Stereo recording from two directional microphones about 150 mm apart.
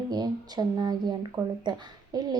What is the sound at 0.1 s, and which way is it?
Speech, 25° right (ahead or behind).